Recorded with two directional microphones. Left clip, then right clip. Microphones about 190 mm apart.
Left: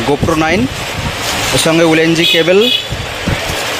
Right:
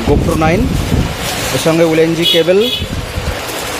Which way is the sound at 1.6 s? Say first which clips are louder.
Even; centre (ahead or behind).